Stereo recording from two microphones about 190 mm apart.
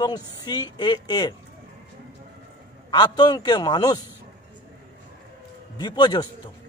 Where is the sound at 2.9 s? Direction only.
20° left (ahead or behind).